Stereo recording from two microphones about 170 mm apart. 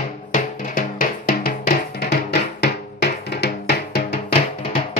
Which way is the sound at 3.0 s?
75° left (ahead or behind).